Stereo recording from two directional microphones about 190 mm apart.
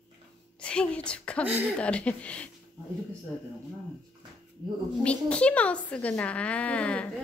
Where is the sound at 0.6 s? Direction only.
5° left (ahead or behind).